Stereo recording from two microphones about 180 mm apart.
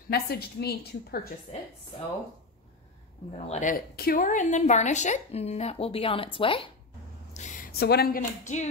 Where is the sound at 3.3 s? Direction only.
40° left (ahead or behind).